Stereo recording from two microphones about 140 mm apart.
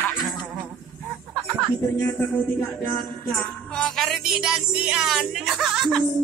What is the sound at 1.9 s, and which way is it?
Music, 10° left (ahead or behind).